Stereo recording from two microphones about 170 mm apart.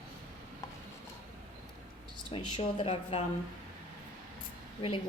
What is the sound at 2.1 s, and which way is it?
Speech, 30° left (ahead or behind).